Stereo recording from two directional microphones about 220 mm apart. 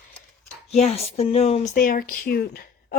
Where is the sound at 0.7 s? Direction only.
30° left (ahead or behind).